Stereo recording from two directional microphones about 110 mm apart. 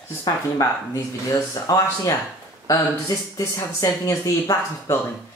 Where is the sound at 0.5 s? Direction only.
30° left (ahead or behind).